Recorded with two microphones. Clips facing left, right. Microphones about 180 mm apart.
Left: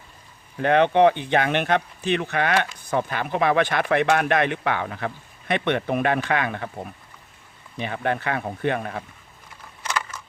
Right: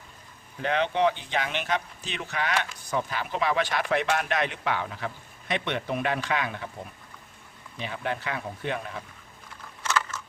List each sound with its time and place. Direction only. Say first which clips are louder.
0.6 s speech: left 8 dB; 60° left (ahead or behind)
7.8 s speech: left 6 dB; 60° left (ahead or behind)
9.8 s a sound: right 1 dB; 10° left (ahead or behind)